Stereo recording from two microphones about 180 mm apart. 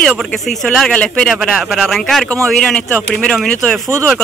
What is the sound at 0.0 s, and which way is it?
A man's voice, 5° left (ahead or behind).